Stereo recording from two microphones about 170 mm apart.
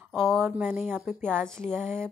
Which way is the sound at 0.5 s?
10° right (ahead or behind).